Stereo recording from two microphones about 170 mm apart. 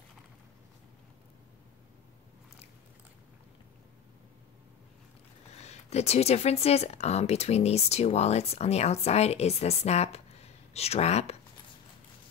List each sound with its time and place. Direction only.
5.6 s speech: 40° left (ahead or behind)